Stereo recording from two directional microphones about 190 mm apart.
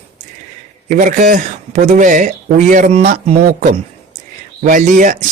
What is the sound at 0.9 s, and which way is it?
Speech, 40° right (ahead or behind).